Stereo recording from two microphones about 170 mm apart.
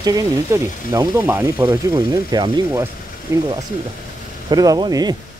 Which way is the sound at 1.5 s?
25° right (ahead or behind).